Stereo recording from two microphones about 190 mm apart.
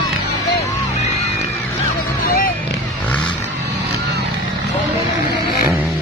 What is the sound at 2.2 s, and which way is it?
Vehicle, 50° left (ahead or behind).